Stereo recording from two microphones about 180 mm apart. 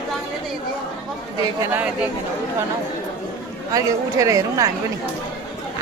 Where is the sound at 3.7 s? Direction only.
20° right (ahead or behind).